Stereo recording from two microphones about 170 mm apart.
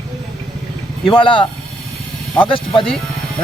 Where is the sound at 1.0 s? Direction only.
30° left (ahead or behind).